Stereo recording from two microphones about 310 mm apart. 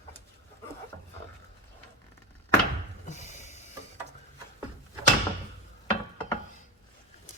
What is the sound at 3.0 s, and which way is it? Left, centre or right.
Music, left.